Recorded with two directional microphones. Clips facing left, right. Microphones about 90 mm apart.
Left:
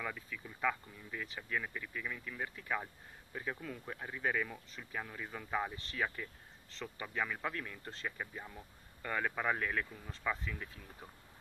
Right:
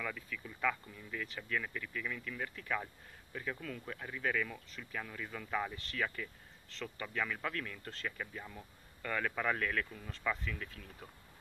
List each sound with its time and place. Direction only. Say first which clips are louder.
0.0 s speech: right 1 dB; 15° left (ahead or behind)